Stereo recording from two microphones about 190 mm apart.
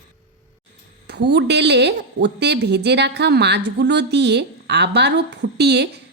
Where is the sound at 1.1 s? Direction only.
65° right (ahead or behind).